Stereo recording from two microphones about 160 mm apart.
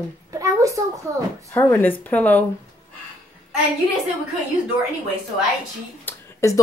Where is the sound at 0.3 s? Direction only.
20° right (ahead or behind).